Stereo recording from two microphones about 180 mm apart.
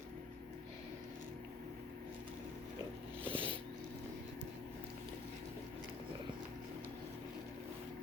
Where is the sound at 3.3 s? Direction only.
30° right (ahead or behind).